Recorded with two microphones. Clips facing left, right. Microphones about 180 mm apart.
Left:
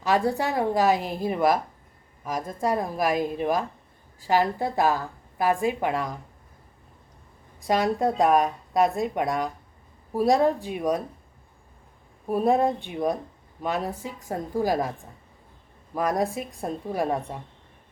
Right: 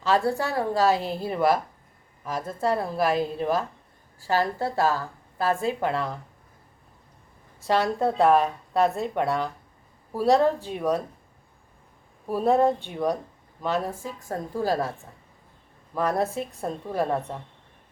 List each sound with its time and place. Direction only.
0.0 s a woman's voice: 15° left (ahead or behind)
7.6 s a woman's voice: 15° left (ahead or behind)
12.5 s a woman's voice: 15° left (ahead or behind)
16.0 s a woman's voice: 15° left (ahead or behind)